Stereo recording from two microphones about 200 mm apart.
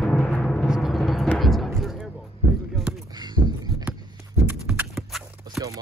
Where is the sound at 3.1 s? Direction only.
20° right (ahead or behind).